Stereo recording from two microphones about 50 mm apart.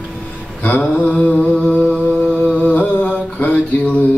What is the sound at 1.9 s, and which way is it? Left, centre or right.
Mantra, right.